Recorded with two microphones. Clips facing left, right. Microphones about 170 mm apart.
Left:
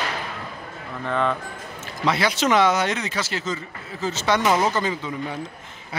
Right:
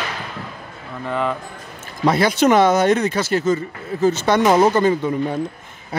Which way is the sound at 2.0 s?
50° right (ahead or behind).